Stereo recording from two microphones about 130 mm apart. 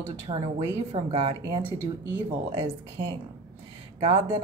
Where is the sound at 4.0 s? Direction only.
40° right (ahead or behind).